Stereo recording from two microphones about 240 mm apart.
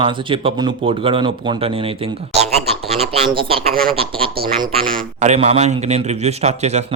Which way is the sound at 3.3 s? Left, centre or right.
Right.